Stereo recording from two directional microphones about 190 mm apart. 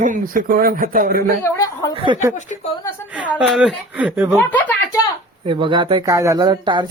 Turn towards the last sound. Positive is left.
turn(degrees=-25)  # may be behind; listen again after turning